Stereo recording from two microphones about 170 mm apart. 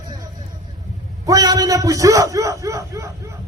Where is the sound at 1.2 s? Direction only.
20° right (ahead or behind).